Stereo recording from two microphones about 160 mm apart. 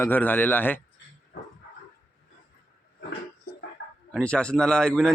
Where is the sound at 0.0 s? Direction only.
10° left (ahead or behind).